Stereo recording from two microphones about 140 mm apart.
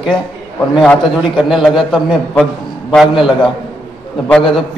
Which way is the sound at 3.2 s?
35° left (ahead or behind).